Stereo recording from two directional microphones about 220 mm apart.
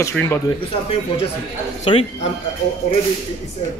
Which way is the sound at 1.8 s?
30° left (ahead or behind).